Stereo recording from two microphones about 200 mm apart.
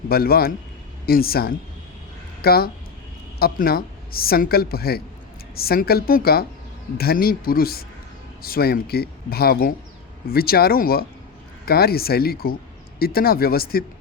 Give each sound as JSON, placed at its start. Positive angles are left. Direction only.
{"t": 0.1, "sound": "speech", "side_deg": 50}